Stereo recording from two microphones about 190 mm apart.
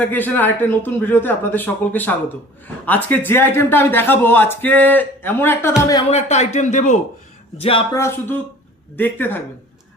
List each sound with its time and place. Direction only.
0.0 s a man's voice: 10° left (ahead or behind)
6.1 s speech: 35° left (ahead or behind)
7.6 s speech: 30° left (ahead or behind)
7.9 s a man's voice: 15° left (ahead or behind)